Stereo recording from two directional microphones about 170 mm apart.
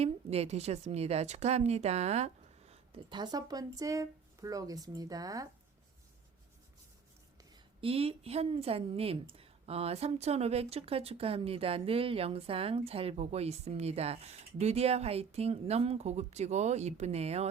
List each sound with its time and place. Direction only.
0.0 s a woman's voice: 35° right (ahead or behind); by 5.5 s 20° right (ahead or behind)
7.5 s a woman's voice: 35° right (ahead or behind)